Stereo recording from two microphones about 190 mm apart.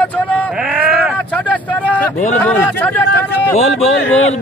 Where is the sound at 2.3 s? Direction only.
10° left (ahead or behind).